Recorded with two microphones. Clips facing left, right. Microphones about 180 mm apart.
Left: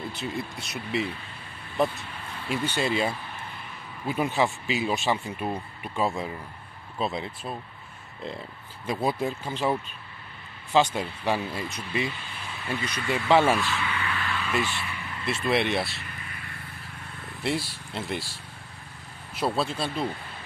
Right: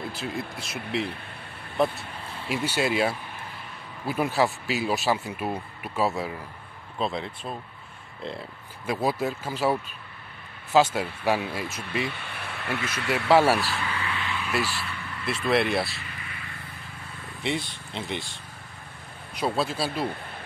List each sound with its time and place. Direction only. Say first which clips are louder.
0.1 s speech: even; centre (ahead or behind)
4.4 s speech: right 1 dB; 5° right (ahead or behind)
8.8 s speech: right 1 dB; 5° right (ahead or behind)
12.2 s speech: right 2 dB; 65° right (ahead or behind)
13.3 s speech: right 1 dB; 10° right (ahead or behind)
13.6 s speech: left 1 dB; 40° right (ahead or behind)
14.0 s a sound: even; 20° right (ahead or behind)
14.4 s speech: even; 5° right (ahead or behind)
17.4 s speech: left 1 dB; 5° left (ahead or behind)
19.3 s speech: even; centre (ahead or behind)